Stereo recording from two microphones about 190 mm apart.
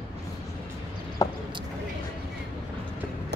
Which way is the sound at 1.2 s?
20° left (ahead or behind).